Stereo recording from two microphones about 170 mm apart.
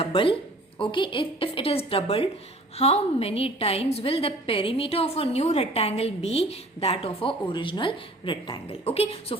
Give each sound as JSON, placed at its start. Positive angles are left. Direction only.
{"t": 0.0, "sound": "a woman's voice", "side_deg": 35}